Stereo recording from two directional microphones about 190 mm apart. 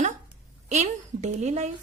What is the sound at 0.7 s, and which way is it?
A woman's voice, 35° right (ahead or behind).